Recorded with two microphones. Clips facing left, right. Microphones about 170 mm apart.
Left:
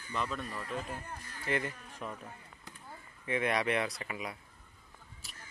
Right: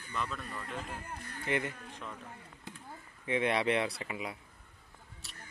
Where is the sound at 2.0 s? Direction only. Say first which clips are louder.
Left 4 dB; 15° left (ahead or behind).